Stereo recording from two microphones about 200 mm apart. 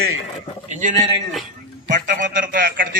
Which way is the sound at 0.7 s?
40° right (ahead or behind).